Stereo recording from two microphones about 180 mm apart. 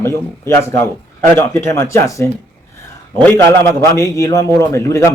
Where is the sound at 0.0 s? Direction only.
15° left (ahead or behind).